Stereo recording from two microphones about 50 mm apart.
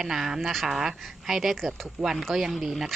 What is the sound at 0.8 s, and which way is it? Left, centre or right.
A woman's voice, centre.